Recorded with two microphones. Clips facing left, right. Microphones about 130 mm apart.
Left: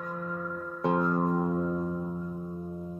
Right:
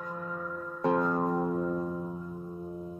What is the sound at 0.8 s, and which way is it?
Music, 15° left (ahead or behind).